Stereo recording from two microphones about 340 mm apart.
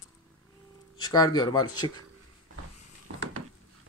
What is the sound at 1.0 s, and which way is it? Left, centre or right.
Speech, centre.